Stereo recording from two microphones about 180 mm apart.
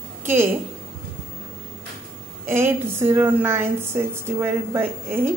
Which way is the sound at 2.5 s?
10° right (ahead or behind).